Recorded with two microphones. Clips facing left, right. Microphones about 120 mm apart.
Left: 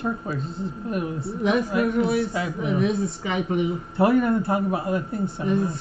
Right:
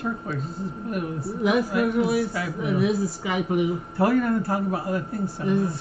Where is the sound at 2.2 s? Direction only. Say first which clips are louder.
Left 1 dB; 25° left (ahead or behind).